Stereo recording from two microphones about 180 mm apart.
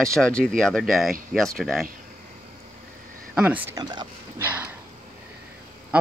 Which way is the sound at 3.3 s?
10° right (ahead or behind).